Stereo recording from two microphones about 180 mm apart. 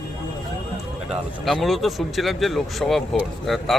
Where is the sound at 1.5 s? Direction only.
Centre (ahead or behind).